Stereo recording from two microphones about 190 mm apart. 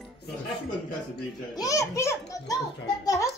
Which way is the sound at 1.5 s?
15° left (ahead or behind).